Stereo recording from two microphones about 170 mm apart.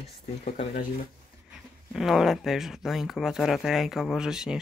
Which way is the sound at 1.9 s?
Centre (ahead or behind).